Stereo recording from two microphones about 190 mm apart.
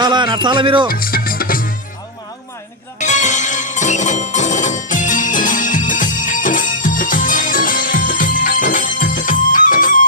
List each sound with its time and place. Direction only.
0.0 s speech: 25° right (ahead or behind)
0.9 s music: 50° left (ahead or behind)
3.0 s music: 40° left (ahead or behind)